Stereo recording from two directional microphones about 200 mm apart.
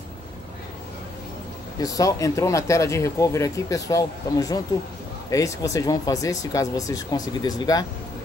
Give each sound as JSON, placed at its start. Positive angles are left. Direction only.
{"t": 1.8, "sound": "speech", "side_deg": 15}